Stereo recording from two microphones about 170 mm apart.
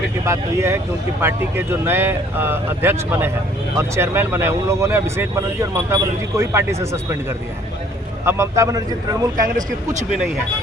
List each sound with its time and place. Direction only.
0.3 s a man's voice: 15° right (ahead or behind)
9.6 s speech: 45° right (ahead or behind)